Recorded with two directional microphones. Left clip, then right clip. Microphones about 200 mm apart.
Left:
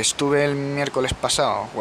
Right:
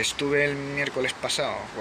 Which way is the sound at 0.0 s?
25° left (ahead or behind).